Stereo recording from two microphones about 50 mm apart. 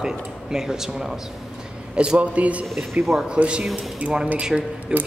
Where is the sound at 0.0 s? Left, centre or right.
Centre.